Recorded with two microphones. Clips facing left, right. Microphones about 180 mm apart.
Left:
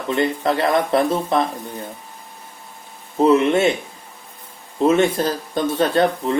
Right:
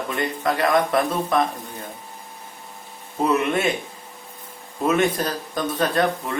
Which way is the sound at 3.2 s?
30° left (ahead or behind).